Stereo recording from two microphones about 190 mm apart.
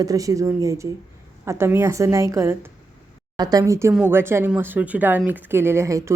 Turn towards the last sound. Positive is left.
turn(degrees=-15)  # may be behind; listen again after turning